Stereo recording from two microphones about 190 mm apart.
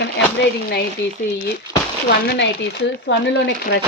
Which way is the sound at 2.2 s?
60° left (ahead or behind).